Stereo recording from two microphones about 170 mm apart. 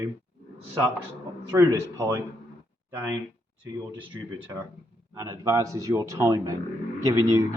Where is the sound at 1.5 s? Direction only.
20° right (ahead or behind).